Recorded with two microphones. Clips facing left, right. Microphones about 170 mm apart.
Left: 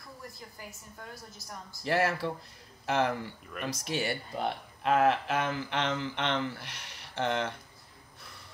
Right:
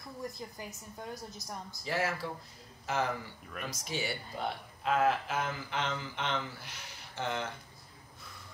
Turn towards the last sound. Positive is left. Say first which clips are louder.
# left 5 dB
turn(degrees=70)  # may be behind; listen again after turning